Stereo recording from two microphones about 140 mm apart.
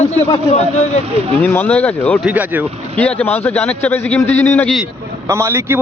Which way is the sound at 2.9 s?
10° left (ahead or behind).